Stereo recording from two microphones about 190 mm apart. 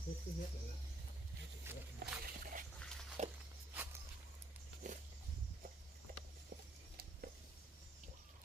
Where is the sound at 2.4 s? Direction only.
45° right (ahead or behind).